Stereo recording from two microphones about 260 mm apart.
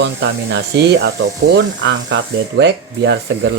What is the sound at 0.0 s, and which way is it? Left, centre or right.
Speech, right.